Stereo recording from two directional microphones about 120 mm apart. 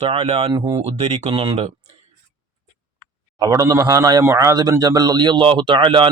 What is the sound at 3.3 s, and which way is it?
Speech, 30° right (ahead or behind).